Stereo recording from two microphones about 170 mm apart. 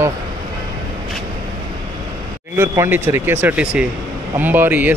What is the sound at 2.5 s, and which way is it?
Speech, 15° right (ahead or behind).